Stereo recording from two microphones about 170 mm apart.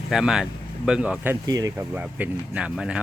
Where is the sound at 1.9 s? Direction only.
10° right (ahead or behind).